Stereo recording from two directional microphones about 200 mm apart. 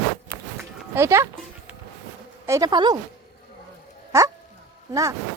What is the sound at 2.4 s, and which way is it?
Speech, 15° right (ahead or behind).